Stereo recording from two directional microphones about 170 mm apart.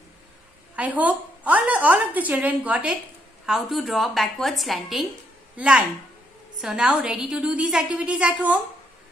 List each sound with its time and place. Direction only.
0.7 s a woman's voice: 10° right (ahead or behind)